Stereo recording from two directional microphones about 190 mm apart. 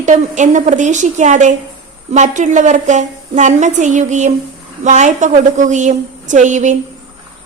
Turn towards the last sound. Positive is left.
turn(degrees=-40)  # may be behind; listen again after turning